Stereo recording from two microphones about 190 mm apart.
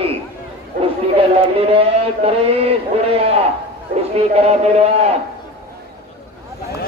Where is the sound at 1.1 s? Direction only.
30° right (ahead or behind).